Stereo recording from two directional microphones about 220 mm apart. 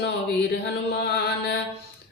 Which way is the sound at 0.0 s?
50° left (ahead or behind).